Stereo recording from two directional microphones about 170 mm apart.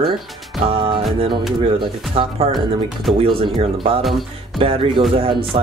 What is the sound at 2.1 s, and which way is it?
Speech, 35° right (ahead or behind).